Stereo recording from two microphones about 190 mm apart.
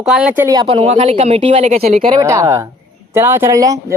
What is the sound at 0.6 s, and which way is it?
Speech, 30° right (ahead or behind).